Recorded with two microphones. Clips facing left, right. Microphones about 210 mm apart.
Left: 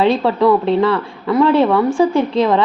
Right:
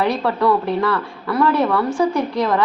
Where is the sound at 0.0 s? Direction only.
25° left (ahead or behind).